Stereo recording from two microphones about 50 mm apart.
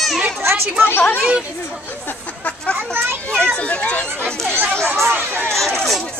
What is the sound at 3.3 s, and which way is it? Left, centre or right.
Children playing, centre.